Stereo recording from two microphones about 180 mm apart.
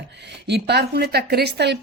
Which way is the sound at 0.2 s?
70° right (ahead or behind).